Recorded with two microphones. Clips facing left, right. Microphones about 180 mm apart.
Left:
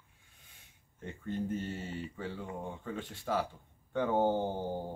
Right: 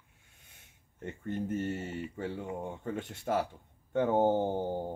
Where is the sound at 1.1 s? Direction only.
20° right (ahead or behind).